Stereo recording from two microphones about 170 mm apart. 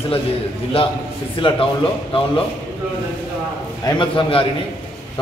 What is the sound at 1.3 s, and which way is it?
Speech, 30° left (ahead or behind).